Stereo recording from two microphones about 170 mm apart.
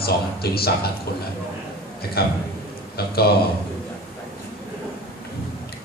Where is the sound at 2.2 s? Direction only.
65° left (ahead or behind).